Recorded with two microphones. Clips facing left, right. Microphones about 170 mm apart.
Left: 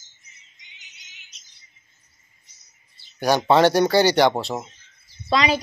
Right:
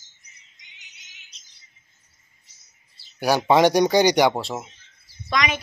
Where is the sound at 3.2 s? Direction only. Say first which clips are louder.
Even; 10° right (ahead or behind).